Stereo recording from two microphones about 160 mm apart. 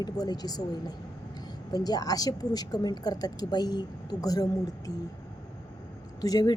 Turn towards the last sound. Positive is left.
turn(degrees=25)  # may be behind; listen again after turning